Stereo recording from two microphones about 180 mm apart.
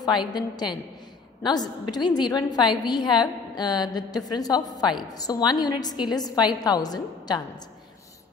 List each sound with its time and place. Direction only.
0.0 s a woman's voice: 25° left (ahead or behind)